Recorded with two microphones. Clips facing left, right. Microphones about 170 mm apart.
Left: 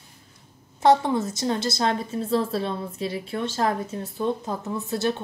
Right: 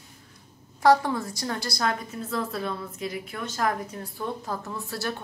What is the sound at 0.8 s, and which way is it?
A woman's voice, 25° left (ahead or behind).